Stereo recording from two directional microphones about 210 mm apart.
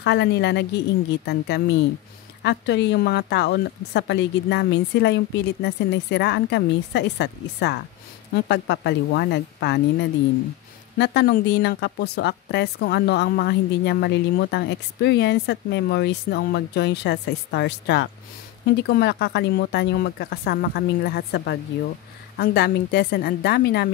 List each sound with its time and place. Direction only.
0.0 s a woman's voice: 55° left (ahead or behind)